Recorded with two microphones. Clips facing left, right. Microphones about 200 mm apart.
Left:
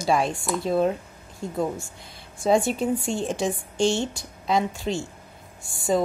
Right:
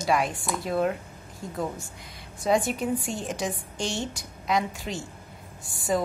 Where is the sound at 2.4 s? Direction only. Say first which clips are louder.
Left 3 dB; 30° left (ahead or behind).